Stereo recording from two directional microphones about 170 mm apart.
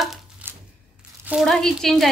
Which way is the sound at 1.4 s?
5° left (ahead or behind).